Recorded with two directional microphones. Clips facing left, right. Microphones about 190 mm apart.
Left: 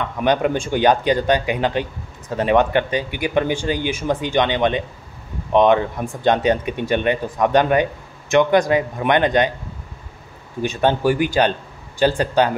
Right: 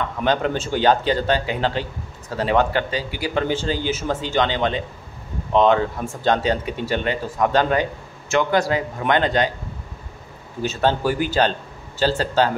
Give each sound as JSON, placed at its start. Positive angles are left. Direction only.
{"t": 0.2, "sound": "speech", "side_deg": 15}
{"t": 10.6, "sound": "speech", "side_deg": 15}